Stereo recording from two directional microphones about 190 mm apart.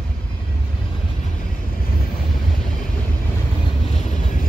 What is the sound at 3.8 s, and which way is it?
Vehicle, 35° left (ahead or behind).